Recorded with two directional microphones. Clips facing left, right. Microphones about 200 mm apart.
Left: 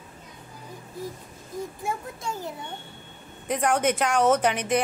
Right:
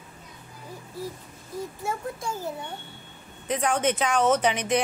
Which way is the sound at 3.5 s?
10° left (ahead or behind).